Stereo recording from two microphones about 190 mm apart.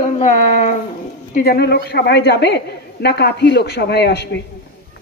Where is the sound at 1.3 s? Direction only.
50° left (ahead or behind).